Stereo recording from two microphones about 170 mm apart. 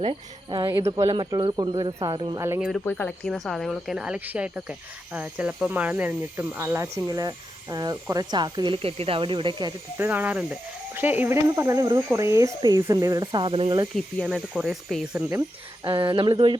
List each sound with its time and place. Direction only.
0.0 s speech: 30° right (ahead or behind)
0.7 s speech: 20° right (ahead or behind)
2.6 s a woman's voice: centre (ahead or behind)
2.8 s speech: 10° left (ahead or behind)
3.3 s a woman's voice: centre (ahead or behind); by 9.7 s 25° right (ahead or behind)
10.0 s speech: 10° right (ahead or behind); by 13.8 s 30° right (ahead or behind)
13.9 s a woman's voice: centre (ahead or behind)
15.8 s speech: 30° right (ahead or behind)